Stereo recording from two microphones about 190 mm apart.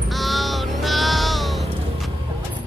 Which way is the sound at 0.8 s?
Centre (ahead or behind).